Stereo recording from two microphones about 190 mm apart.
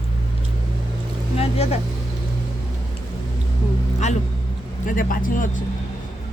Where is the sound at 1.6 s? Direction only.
30° left (ahead or behind).